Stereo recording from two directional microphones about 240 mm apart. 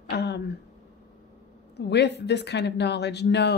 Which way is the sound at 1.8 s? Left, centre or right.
Left.